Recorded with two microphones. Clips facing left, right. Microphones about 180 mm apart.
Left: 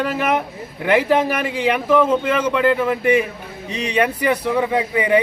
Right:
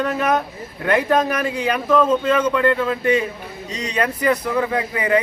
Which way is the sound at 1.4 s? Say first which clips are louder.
Left 2 dB; 15° left (ahead or behind).